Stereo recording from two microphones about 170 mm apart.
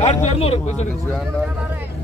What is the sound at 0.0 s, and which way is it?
Speech, 40° left (ahead or behind).